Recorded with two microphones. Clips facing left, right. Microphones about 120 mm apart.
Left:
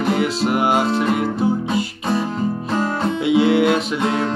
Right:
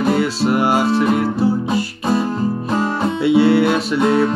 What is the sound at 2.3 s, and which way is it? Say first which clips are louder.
Music: right 2 dB; 10° right (ahead or behind).